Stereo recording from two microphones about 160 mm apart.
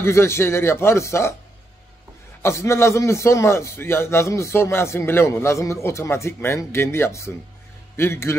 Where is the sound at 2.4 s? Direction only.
15° left (ahead or behind).